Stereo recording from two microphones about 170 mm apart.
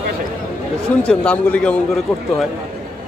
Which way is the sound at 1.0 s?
5° left (ahead or behind).